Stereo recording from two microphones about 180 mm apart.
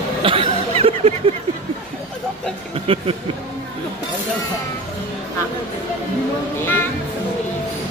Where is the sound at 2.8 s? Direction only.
35° right (ahead or behind).